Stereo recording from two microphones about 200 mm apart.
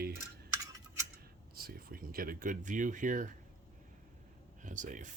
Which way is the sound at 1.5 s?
50° right (ahead or behind).